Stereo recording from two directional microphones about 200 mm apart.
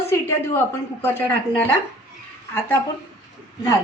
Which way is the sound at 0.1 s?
15° left (ahead or behind).